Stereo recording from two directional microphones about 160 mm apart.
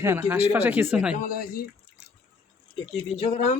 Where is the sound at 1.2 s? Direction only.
65° left (ahead or behind).